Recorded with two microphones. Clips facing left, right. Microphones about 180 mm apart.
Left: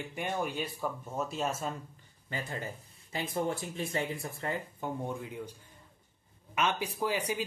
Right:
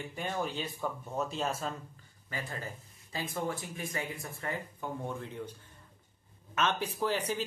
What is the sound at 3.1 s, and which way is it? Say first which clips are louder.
Speech: left 3 dB; 25° left (ahead or behind).